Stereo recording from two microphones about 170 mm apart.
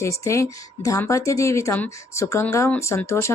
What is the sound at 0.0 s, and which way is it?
Speech, 15° left (ahead or behind).